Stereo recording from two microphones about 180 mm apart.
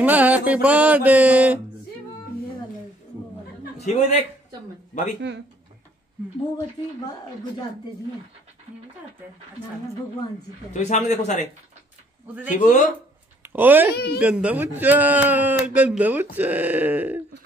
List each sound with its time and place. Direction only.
0.0 s mantra: 10° right (ahead or behind)
3.7 s a man's voice: 35° left (ahead or behind)
10.7 s speech: 40° left (ahead or behind)
12.4 s speech: 45° left (ahead or behind)
13.4 s speech: 10° right (ahead or behind)
13.9 s a woman's voice: 65° left (ahead or behind)
14.2 s speech: 5° right (ahead or behind)